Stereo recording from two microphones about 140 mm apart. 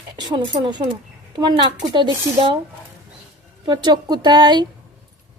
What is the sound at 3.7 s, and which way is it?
A woman's voice, 30° right (ahead or behind).